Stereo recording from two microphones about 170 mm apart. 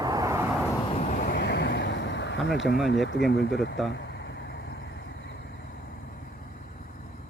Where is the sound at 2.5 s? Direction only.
90° left.